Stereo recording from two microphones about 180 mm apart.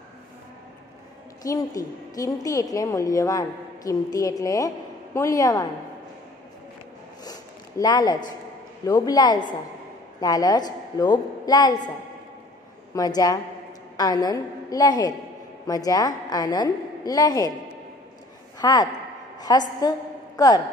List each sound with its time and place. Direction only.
1.4 s a woman's voice: 20° left (ahead or behind)
7.2 s zipper: 20° left (ahead or behind)
8.8 s a woman's voice: 20° left (ahead or behind)
12.9 s a woman's voice: 20° left (ahead or behind)
18.6 s a woman's voice: 20° left (ahead or behind)